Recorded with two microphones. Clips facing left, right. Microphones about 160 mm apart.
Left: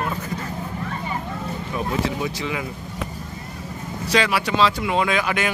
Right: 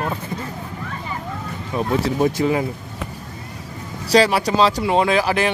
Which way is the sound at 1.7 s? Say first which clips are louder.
Right 5 dB; 45° right (ahead or behind).